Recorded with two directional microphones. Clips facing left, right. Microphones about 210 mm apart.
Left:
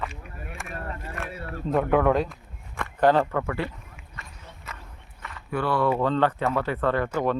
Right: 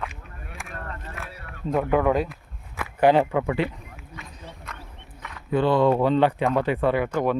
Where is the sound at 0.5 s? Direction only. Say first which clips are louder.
Left 1 dB; centre (ahead or behind).